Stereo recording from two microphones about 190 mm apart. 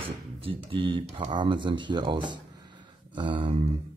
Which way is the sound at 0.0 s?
30° right (ahead or behind).